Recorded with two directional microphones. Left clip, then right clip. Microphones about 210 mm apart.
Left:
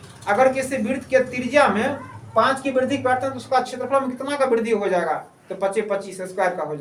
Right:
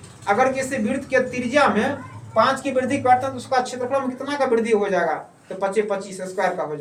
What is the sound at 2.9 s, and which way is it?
Speech, 15° left (ahead or behind).